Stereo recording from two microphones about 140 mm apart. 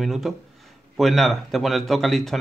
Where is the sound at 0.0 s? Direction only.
Centre (ahead or behind).